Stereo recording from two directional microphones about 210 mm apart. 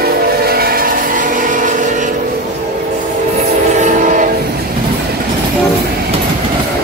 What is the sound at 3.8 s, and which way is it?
Train, 35° right (ahead or behind).